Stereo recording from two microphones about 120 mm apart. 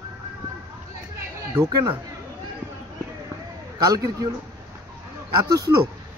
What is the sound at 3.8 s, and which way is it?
Speech, 30° right (ahead or behind).